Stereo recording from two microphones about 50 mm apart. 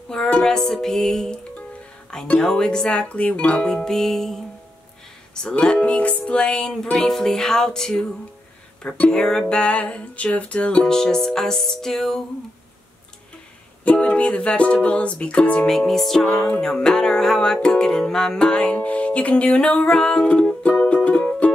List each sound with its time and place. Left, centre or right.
0.1 s music: centre
2.9 s music: left
8.8 s music: left
9.1 s music: centre
9.6 s music: left
10.9 s music: centre
13.9 s music: left
15.6 s music: centre; by 19.7 s left
19.7 s music: centre